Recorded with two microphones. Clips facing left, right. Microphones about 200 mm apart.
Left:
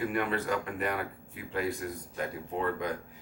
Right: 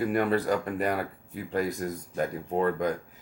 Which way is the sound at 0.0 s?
40° right (ahead or behind).